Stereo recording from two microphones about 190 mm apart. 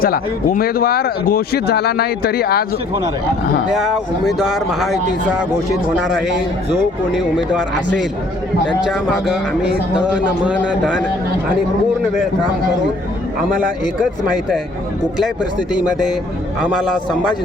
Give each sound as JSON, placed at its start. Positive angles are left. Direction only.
{"t": 0.0, "sound": "speech", "side_deg": 50}
{"t": 3.8, "sound": "speech", "side_deg": 0}
{"t": 8.8, "sound": "speech", "side_deg": -5}
{"t": 16.6, "sound": "speech", "side_deg": -5}